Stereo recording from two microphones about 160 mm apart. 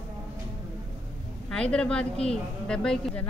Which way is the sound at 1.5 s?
5° left (ahead or behind).